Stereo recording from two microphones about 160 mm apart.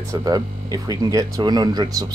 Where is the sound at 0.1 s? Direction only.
25° right (ahead or behind).